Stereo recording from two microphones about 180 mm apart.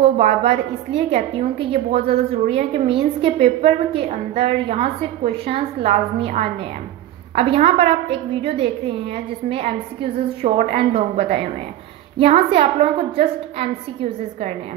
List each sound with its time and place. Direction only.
0.0 s a woman's voice: 35° right (ahead or behind)